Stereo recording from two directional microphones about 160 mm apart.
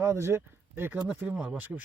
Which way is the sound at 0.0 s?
15° right (ahead or behind).